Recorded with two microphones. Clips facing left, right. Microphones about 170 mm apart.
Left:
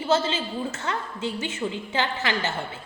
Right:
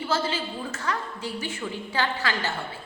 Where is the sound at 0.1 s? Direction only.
25° left (ahead or behind).